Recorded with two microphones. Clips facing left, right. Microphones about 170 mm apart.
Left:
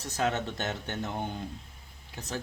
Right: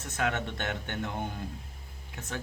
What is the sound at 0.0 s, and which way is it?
Speech, 35° left (ahead or behind).